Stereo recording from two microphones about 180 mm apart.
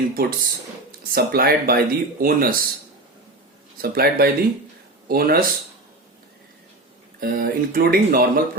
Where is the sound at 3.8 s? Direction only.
55° right (ahead or behind).